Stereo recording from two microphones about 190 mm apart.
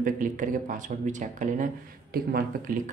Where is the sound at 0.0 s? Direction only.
45° right (ahead or behind).